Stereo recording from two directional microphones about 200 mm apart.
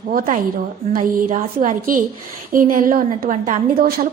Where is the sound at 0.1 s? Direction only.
45° right (ahead or behind).